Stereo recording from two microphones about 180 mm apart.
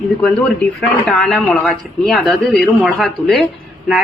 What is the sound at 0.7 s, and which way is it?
Speech, 5° left (ahead or behind).